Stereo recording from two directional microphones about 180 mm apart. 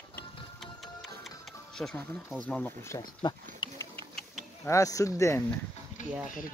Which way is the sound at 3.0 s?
25° left (ahead or behind).